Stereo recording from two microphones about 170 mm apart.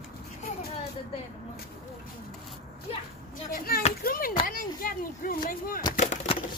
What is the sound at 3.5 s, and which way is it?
Speech, 60° left (ahead or behind).